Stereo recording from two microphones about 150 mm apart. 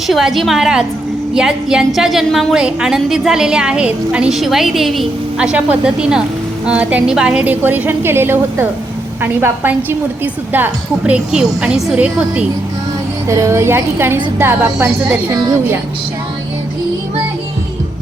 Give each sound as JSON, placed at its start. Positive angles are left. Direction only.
{"t": 0.1, "sound": "a woman's voice", "side_deg": 0}
{"t": 13.2, "sound": "a woman's voice", "side_deg": -20}